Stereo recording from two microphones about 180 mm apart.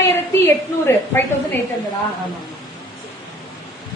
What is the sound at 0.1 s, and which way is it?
A woman's voice, 15° left (ahead or behind).